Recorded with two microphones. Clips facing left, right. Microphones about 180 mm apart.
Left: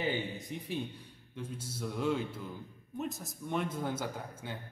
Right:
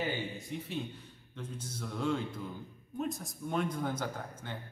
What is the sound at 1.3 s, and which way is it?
A man's voice, 10° left (ahead or behind).